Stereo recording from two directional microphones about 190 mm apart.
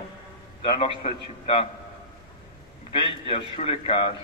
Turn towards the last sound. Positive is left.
turn(degrees=30)  # may be behind; listen again after turning